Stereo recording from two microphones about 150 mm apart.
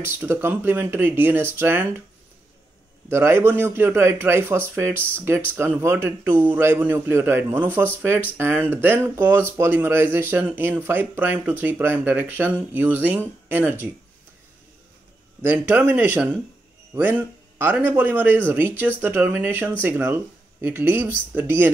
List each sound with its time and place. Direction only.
0.0 s speech: 15° right (ahead or behind)
3.1 s speech: 15° right (ahead or behind)
15.4 s speech: 10° right (ahead or behind)